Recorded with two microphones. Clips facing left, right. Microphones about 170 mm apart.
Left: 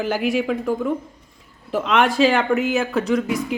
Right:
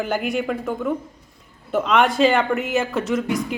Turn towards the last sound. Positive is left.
turn(degrees=0)  # may be behind; listen again after turning